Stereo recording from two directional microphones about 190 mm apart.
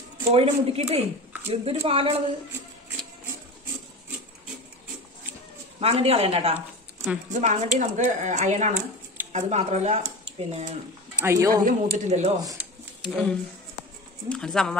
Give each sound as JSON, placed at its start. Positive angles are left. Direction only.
{"t": 0.3, "sound": "a woman's voice", "side_deg": -30}
{"t": 5.8, "sound": "speech", "side_deg": -30}
{"t": 11.1, "sound": "speech", "side_deg": -15}
{"t": 11.6, "sound": "speech", "side_deg": -40}
{"t": 12.5, "sound": "a sound", "side_deg": 0}
{"t": 14.3, "sound": "speech", "side_deg": 5}